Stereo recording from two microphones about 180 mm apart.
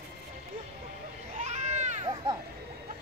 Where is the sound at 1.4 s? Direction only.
40° right (ahead or behind).